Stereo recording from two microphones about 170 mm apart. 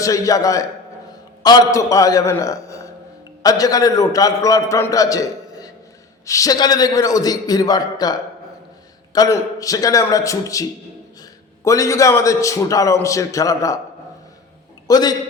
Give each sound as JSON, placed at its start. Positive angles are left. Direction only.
{"t": 0.0, "sound": "a man's voice", "side_deg": 20}
{"t": 9.1, "sound": "a man's voice", "side_deg": 20}
{"t": 14.8, "sound": "a man's voice", "side_deg": 20}